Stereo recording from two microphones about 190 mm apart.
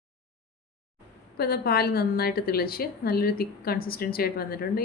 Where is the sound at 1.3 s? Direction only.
55° left (ahead or behind).